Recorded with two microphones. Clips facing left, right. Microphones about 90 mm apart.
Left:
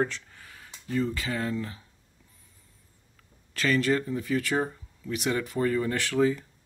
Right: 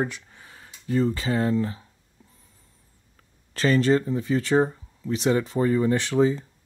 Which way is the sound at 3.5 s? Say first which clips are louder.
Right 5 dB; 30° right (ahead or behind).